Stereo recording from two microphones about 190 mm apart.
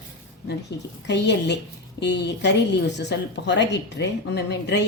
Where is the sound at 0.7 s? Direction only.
65° left (ahead or behind).